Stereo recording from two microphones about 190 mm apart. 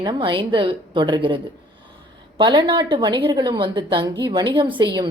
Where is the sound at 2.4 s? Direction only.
25° right (ahead or behind).